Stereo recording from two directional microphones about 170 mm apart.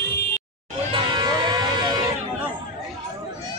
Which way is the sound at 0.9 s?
25° right (ahead or behind).